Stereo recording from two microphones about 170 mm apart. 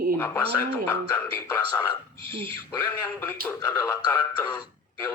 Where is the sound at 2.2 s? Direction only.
30° right (ahead or behind).